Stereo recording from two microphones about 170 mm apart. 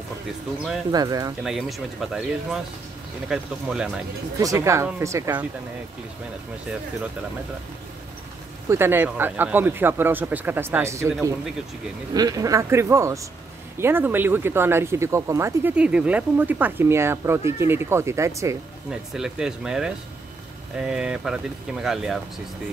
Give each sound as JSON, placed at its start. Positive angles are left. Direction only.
{"t": 0.9, "sound": "a man's voice", "side_deg": -20}
{"t": 1.4, "sound": "speech", "side_deg": 0}
{"t": 4.4, "sound": "speech", "side_deg": -20}
{"t": 8.6, "sound": "a man's voice", "side_deg": -15}
{"t": 15.7, "sound": "speech", "side_deg": -5}
{"t": 18.9, "sound": "speech", "side_deg": -5}